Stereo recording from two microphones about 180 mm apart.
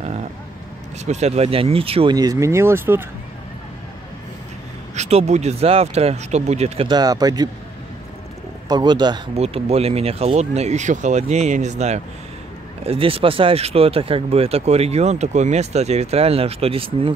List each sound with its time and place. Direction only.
0.0 s vehicle: 40° right (ahead or behind)
1.0 s speech: 40° right (ahead or behind)
2.1 s speech: 20° right (ahead or behind)
4.9 s speech: 35° right (ahead or behind)
6.9 s a man's voice: 20° right (ahead or behind)
8.6 s a man's voice: 25° right (ahead or behind)
9.4 s speech: 35° right (ahead or behind)